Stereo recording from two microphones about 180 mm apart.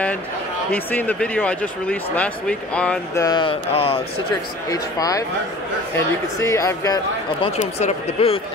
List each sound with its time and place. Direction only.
0.7 s speech: 10° left (ahead or behind)
3.2 s speech: 25° left (ahead or behind)
4.6 s speech: 20° left (ahead or behind)
6.4 s speech: 15° left (ahead or behind)
7.5 s speech: 35° left (ahead or behind)